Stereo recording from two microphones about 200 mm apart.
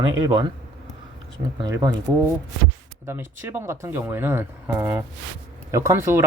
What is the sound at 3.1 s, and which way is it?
Speech, 10° right (ahead or behind).